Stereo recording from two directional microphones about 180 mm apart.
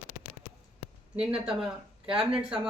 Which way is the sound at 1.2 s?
5° right (ahead or behind).